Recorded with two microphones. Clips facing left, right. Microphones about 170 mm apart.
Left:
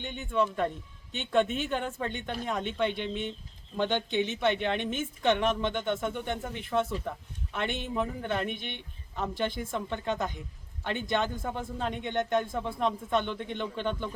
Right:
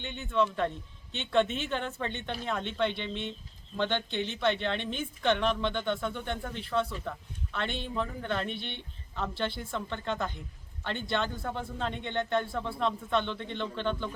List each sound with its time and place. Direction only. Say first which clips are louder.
0.3 s a man's voice: even; 10° left (ahead or behind)